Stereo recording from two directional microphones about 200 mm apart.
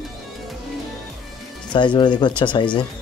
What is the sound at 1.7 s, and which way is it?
Speech, 25° left (ahead or behind).